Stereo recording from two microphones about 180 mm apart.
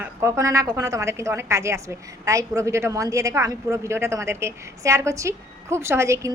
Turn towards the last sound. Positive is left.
turn(degrees=-15)  # may be behind; listen again after turning